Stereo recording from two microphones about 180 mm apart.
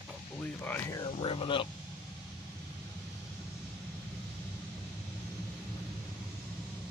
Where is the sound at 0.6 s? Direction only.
15° left (ahead or behind).